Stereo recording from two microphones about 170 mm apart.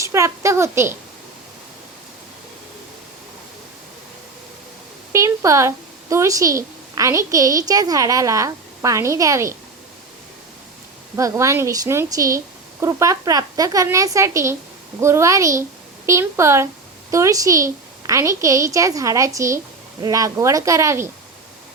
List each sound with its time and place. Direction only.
0.0 s a woman's voice: 15° right (ahead or behind)
5.1 s a woman's voice: 20° right (ahead or behind)
11.2 s a woman's voice: 15° right (ahead or behind)